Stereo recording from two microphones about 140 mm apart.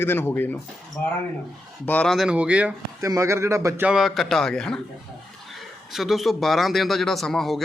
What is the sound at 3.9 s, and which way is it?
Speech, 5° right (ahead or behind).